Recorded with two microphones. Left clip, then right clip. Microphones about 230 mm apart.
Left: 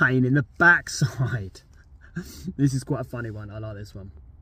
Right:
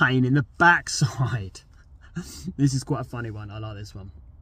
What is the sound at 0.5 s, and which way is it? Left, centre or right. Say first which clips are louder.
Speech: even; centre.